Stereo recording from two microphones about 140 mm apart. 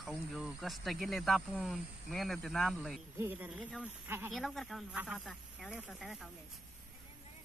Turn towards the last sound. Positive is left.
turn(degrees=0)  # may be behind; listen again after turning